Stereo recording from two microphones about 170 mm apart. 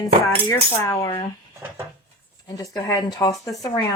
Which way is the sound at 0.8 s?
20° left (ahead or behind).